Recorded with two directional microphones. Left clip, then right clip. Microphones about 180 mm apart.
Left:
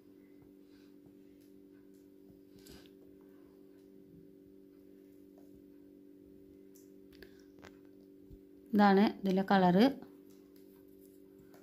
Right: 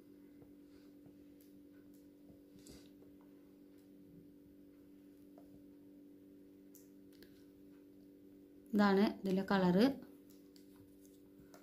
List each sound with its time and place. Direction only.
8.7 s a woman's voice: 50° left (ahead or behind)